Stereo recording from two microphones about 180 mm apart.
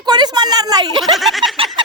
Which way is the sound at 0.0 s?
25° right (ahead or behind).